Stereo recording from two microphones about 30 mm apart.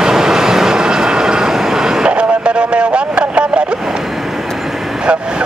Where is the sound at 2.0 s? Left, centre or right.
Right.